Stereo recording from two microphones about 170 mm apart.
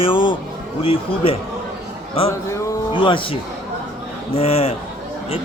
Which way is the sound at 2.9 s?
30° left (ahead or behind).